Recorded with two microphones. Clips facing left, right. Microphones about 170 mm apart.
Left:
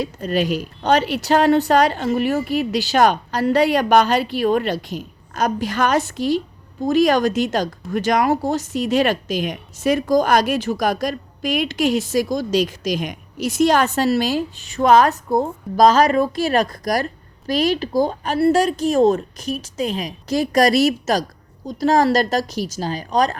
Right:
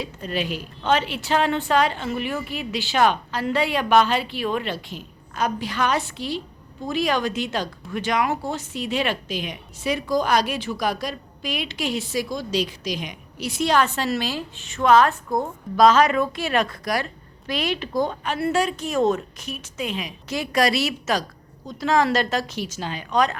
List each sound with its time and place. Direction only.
0.0 s speech: 45° left (ahead or behind)